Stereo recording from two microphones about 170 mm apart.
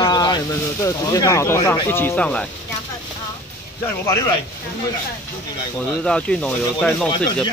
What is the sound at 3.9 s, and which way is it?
Speech, 15° left (ahead or behind).